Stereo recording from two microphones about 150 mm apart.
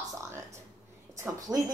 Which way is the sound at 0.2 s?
20° right (ahead or behind).